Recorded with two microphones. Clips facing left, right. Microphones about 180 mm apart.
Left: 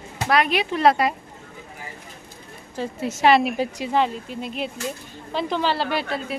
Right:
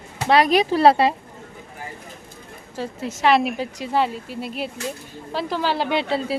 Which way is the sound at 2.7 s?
Centre (ahead or behind).